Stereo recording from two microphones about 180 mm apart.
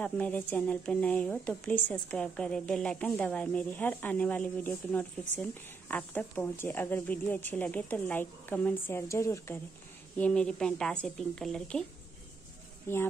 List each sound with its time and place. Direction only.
0.0 s a woman's voice: 10° left (ahead or behind)
12.9 s a woman's voice: 15° left (ahead or behind)